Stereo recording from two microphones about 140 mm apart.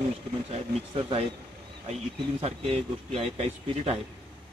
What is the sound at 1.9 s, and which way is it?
Speech, 50° right (ahead or behind).